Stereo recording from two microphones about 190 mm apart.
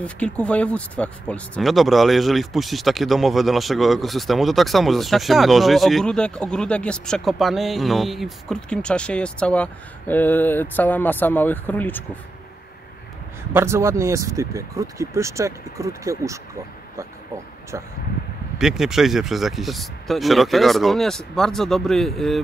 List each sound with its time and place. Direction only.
0.0 s speech: 5° left (ahead or behind)
13.5 s speech: 15° right (ahead or behind)
18.6 s speech: centre (ahead or behind)